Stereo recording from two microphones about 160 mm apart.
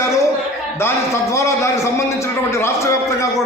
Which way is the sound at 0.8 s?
15° left (ahead or behind).